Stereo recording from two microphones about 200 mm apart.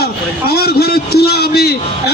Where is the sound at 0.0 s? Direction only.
50° left (ahead or behind).